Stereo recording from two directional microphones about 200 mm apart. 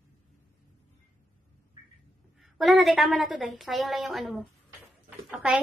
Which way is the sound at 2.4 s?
Centre (ahead or behind).